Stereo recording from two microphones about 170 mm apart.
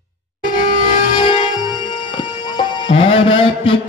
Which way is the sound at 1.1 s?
30° left (ahead or behind).